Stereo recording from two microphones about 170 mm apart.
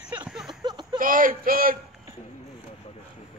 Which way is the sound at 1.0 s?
55° right (ahead or behind).